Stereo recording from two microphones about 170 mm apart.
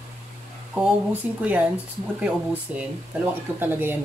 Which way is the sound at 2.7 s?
10° right (ahead or behind).